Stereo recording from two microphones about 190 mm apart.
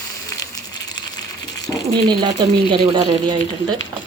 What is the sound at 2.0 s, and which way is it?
A woman's voice, 25° right (ahead or behind).